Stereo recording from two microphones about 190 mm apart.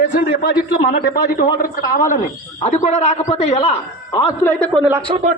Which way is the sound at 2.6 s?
35° left (ahead or behind).